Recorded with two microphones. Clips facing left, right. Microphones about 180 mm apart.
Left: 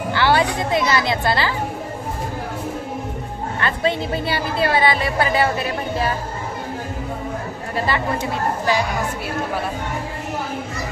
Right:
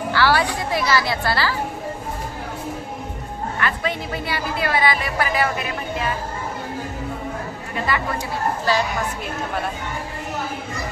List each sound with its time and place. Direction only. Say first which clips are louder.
0.1 s speech: left 2 dB; 20° left (ahead or behind)
3.5 s a woman's voice: left 4 dB; 30° left (ahead or behind)
7.7 s speech: left 2 dB; 30° left (ahead or behind)